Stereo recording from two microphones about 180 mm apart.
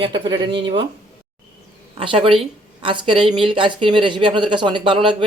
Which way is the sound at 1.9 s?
30° right (ahead or behind).